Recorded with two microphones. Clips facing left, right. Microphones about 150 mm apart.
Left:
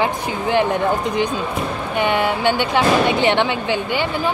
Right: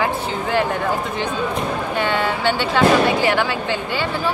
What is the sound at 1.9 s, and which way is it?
A woman's voice, 15° left (ahead or behind).